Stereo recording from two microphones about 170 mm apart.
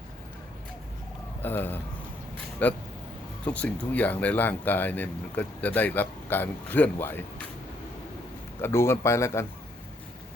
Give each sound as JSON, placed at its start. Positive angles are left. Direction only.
{"t": 1.4, "sound": "speech", "side_deg": 10}
{"t": 8.6, "sound": "speech", "side_deg": 15}